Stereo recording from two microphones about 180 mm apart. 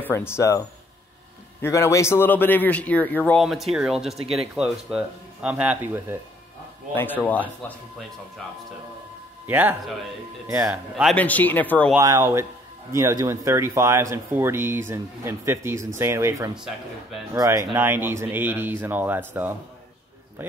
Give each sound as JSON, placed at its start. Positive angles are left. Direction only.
{"t": 0.0, "sound": "a man's voice", "side_deg": 15}
{"t": 3.4, "sound": "speech", "side_deg": 0}
{"t": 7.0, "sound": "a man's voice", "side_deg": 10}
{"t": 9.5, "sound": "speech", "side_deg": -10}
{"t": 11.1, "sound": "a man's voice", "side_deg": 10}
{"t": 12.0, "sound": "speech", "side_deg": -15}
{"t": 16.5, "sound": "speech", "side_deg": -5}
{"t": 17.3, "sound": "speech", "side_deg": -15}